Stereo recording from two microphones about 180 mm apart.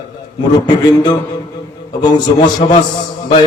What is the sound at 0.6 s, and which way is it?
Mantra, 25° left (ahead or behind).